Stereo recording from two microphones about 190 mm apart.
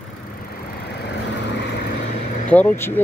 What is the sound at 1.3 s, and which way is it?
Vehicle, 65° left (ahead or behind).